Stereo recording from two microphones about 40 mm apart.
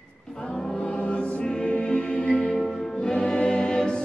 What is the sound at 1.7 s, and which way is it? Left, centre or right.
Music, left.